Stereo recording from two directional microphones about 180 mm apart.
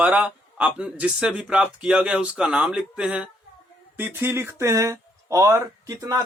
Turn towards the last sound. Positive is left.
turn(degrees=-20)  # may be behind; listen again after turning